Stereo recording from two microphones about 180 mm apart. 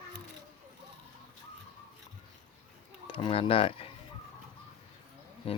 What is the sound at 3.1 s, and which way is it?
Speech, 30° left (ahead or behind).